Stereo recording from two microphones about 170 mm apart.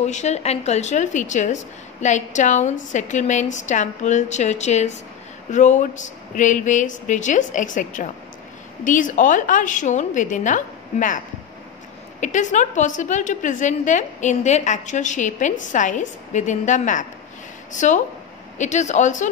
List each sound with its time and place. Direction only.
0.0 s a woman's voice: 40° left (ahead or behind)